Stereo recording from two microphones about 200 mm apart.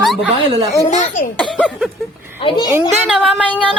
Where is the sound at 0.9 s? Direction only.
40° left (ahead or behind).